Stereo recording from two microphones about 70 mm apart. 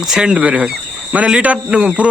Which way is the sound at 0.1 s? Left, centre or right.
Centre.